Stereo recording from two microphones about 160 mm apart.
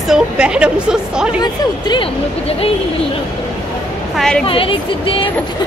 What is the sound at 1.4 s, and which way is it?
Speech, 30° left (ahead or behind).